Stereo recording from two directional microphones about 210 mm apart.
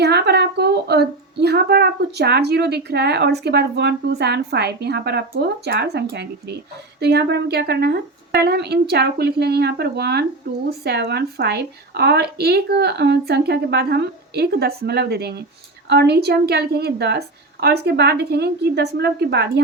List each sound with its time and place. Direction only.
0.0 s a woman's voice: 50° right (ahead or behind)